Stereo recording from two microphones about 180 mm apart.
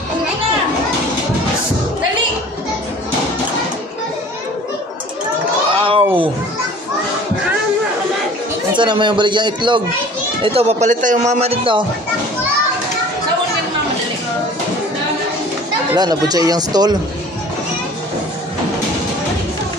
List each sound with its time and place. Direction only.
5.8 s a sound: 30° right (ahead or behind)
8.7 s a man's voice: 25° right (ahead or behind)
15.9 s a man's voice: 20° right (ahead or behind)